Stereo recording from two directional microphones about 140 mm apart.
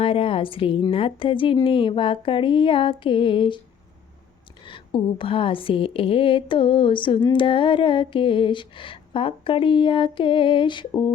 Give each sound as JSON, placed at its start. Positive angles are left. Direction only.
{"t": 0.0, "sound": "a woman's voice", "side_deg": 40}
{"t": 4.6, "sound": "a woman's voice", "side_deg": 35}